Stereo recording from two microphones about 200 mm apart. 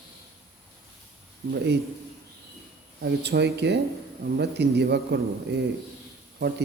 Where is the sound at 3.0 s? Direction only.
55° right (ahead or behind).